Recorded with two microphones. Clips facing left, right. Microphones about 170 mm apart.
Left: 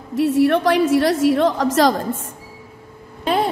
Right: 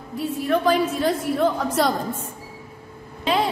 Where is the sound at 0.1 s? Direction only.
85° left.